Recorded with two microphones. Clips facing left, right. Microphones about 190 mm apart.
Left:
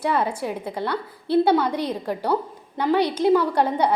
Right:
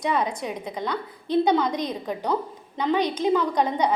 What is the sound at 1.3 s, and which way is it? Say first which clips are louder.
A woman's voice: left 2 dB; 10° left (ahead or behind).